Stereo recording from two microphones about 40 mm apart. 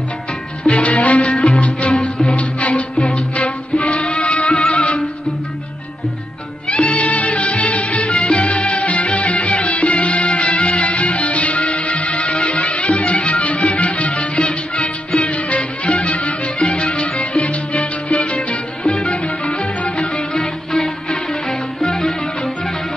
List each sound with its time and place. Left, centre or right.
0.7 s music: left
1.3 s music: left
2.3 s music: left
6.7 s music: left
20.3 s music: centre